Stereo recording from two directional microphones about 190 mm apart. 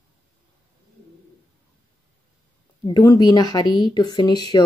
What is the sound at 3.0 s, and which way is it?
Speech, 20° left (ahead or behind).